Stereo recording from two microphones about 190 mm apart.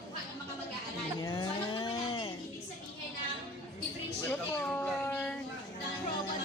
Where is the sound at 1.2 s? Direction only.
20° left (ahead or behind).